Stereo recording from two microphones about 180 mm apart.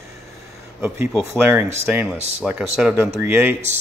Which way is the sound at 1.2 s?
15° right (ahead or behind).